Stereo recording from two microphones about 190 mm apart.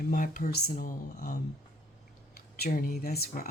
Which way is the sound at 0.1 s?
45° left (ahead or behind).